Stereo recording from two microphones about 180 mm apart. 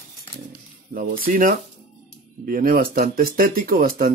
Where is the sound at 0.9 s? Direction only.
55° right (ahead or behind).